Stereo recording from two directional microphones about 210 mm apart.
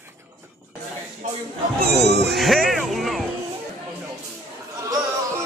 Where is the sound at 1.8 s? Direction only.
50° right (ahead or behind).